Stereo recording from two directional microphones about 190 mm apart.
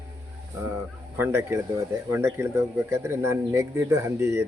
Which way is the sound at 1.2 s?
15° right (ahead or behind).